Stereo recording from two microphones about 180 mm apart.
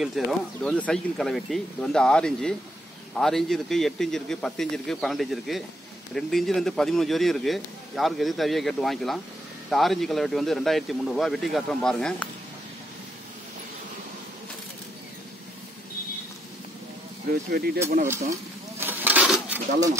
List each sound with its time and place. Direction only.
0.0 s speech: centre (ahead or behind)
17.3 s speech: 55° right (ahead or behind)
17.8 s speech: 45° right (ahead or behind)
18.3 s a sound: 10° right (ahead or behind)